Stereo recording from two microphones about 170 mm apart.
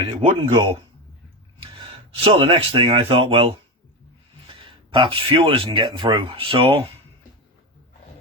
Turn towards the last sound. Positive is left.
turn(degrees=-30)  # may be behind; listen again after turning